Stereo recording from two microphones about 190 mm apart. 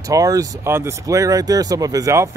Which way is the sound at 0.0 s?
15° right (ahead or behind).